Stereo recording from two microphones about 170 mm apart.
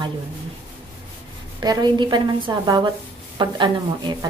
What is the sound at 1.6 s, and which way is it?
A woman's voice, 25° right (ahead or behind).